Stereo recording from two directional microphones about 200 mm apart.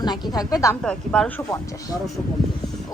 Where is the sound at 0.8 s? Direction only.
5° left (ahead or behind).